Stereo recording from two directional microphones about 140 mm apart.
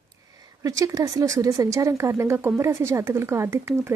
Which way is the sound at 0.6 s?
25° right (ahead or behind).